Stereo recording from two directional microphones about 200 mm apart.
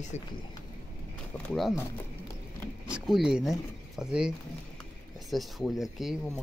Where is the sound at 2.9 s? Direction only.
5° right (ahead or behind).